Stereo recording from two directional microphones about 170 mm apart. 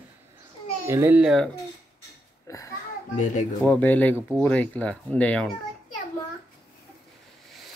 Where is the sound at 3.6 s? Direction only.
10° left (ahead or behind).